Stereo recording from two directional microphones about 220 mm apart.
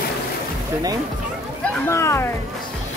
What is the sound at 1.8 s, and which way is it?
Speech, 10° left (ahead or behind).